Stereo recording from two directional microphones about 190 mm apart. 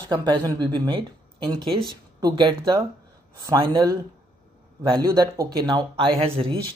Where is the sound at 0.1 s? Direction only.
25° right (ahead or behind).